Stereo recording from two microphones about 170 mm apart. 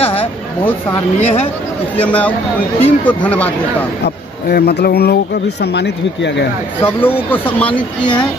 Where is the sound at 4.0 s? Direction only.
70° left (ahead or behind).